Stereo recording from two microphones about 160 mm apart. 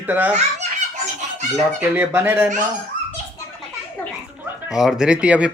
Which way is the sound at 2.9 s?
50° left (ahead or behind).